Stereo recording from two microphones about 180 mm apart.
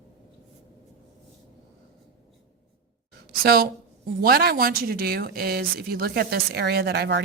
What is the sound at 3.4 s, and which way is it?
A woman's voice, 55° right (ahead or behind).